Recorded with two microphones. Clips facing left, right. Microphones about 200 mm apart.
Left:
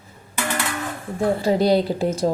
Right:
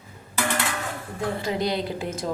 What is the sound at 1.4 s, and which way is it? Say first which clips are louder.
Speech: left 9 dB; 35° left (ahead or behind).